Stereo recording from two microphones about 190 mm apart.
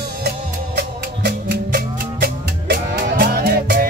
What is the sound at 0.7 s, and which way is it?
Music, 55° right (ahead or behind).